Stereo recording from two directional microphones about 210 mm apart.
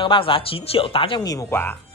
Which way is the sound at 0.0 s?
25° left (ahead or behind).